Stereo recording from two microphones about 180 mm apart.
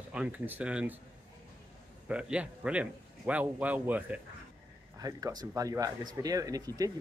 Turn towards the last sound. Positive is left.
turn(degrees=-20)  # may be behind; listen again after turning